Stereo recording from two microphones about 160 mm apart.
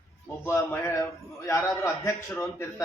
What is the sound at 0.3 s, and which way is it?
A man's voice, 15° left (ahead or behind).